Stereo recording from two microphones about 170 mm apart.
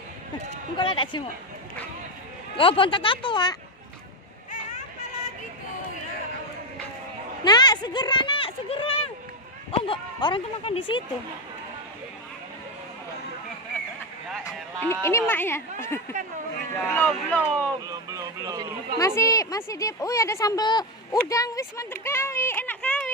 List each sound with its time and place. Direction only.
0.7 s a woman's voice: 30° left (ahead or behind)
2.5 s a woman's voice: 30° left (ahead or behind)
7.4 s a sound: 25° left (ahead or behind)
9.7 s speech: 30° left (ahead or behind)
14.4 s a woman's voice: 15° left (ahead or behind)
17.8 s speech: 20° right (ahead or behind)
18.9 s a woman's voice: 15° left (ahead or behind)